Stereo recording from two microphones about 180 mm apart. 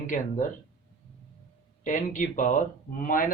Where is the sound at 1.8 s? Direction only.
45° left (ahead or behind).